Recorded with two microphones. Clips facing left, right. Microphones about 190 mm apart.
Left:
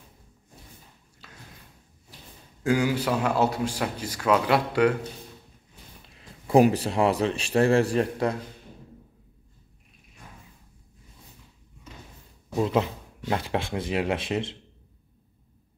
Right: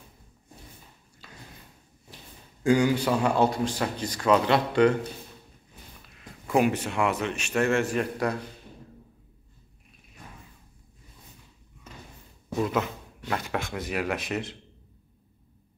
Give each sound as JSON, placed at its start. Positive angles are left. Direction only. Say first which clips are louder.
{"t": 1.2, "sound": "a sound", "louder": "right 1 dB", "side_deg": 0}
{"t": 2.6, "sound": "a man's voice", "louder": "right 2 dB", "side_deg": 5}
{"t": 6.0, "sound": "a man's voice", "louder": "left 2 dB", "side_deg": 30}
{"t": 12.5, "sound": "speech", "louder": "left 3 dB", "side_deg": 30}